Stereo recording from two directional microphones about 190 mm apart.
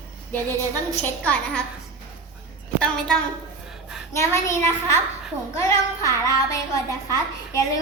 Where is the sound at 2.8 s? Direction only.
5° left (ahead or behind).